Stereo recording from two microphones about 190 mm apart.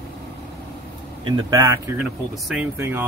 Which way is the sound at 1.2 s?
20° right (ahead or behind).